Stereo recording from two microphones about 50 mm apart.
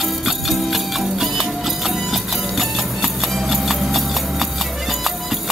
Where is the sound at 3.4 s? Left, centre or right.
Centre.